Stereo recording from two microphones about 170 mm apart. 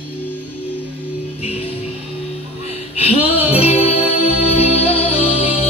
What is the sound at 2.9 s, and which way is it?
Music, 35° left (ahead or behind).